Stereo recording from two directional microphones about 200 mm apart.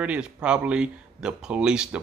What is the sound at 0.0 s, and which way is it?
A man's voice, 5° right (ahead or behind).